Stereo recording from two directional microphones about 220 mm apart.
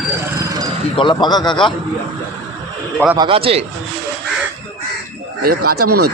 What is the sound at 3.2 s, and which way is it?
Speech, 25° right (ahead or behind).